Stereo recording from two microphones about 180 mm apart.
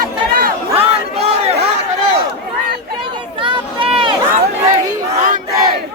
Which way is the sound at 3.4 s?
30° right (ahead or behind).